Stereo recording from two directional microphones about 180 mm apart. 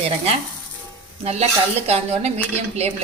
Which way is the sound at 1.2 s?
35° right (ahead or behind).